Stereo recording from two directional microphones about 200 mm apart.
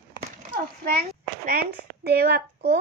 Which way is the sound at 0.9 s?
50° right (ahead or behind).